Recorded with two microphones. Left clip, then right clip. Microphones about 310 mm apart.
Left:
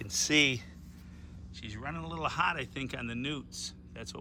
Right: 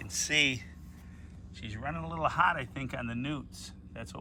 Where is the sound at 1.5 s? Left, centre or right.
Centre.